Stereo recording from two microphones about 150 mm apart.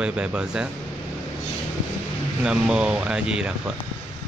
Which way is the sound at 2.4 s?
5° right (ahead or behind).